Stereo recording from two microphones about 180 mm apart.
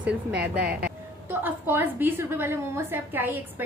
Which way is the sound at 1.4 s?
10° right (ahead or behind).